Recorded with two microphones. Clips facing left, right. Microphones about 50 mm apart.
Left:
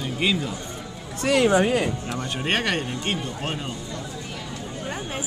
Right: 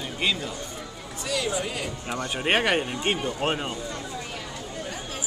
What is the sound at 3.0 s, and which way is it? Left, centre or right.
Speech, right.